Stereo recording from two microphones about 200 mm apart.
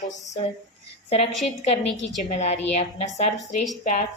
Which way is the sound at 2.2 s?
35° left (ahead or behind).